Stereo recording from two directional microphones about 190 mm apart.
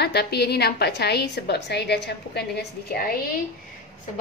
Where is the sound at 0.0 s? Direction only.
60° left (ahead or behind).